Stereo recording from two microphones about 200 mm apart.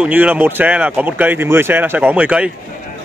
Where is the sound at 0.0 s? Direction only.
10° right (ahead or behind).